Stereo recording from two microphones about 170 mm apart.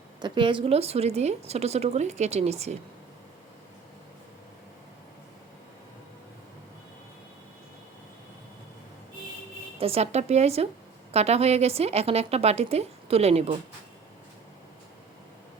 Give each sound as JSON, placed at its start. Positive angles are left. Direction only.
{"t": 0.2, "sound": "a woman's voice", "side_deg": -25}
{"t": 9.7, "sound": "a woman's voice", "side_deg": -35}